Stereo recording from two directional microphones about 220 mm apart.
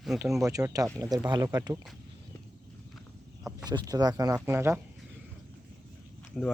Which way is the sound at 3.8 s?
15° right (ahead or behind).